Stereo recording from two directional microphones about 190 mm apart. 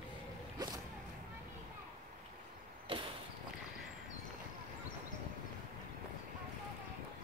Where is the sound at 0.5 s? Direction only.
20° right (ahead or behind).